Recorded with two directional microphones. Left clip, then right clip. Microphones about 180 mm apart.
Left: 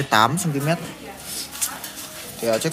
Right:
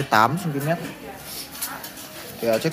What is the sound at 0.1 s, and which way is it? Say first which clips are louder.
Speech: even; 5° left (ahead or behind).